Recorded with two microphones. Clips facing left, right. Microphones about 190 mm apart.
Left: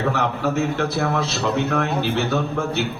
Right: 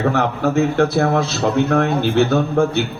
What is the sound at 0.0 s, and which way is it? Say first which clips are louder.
A man's voice: right 4 dB; 50° right (ahead or behind).